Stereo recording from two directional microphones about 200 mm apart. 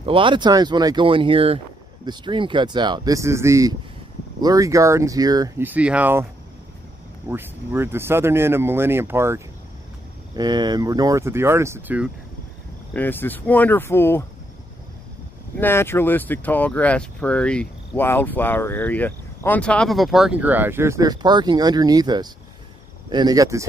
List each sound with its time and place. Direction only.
0.0 s speech: 25° right (ahead or behind); by 6.2 s 10° right (ahead or behind)
7.2 s speech: 10° right (ahead or behind)
12.9 s speech: 10° left (ahead or behind)
15.5 s speech: 10° left (ahead or behind); by 23.7 s 15° right (ahead or behind)